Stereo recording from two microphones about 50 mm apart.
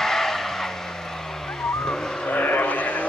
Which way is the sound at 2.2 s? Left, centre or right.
Left.